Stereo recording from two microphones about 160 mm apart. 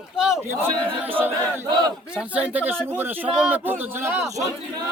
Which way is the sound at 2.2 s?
10° right (ahead or behind).